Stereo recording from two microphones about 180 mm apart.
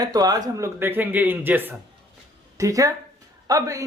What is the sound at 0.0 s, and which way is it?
A man's voice, 20° right (ahead or behind).